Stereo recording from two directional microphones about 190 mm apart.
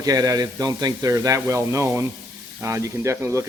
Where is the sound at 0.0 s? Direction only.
20° right (ahead or behind).